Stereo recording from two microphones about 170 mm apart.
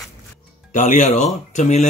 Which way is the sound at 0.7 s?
45° left (ahead or behind).